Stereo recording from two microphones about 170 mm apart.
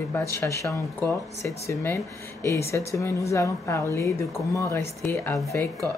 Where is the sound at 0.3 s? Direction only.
15° left (ahead or behind).